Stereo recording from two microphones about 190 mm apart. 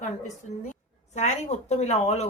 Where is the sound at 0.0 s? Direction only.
40° left (ahead or behind).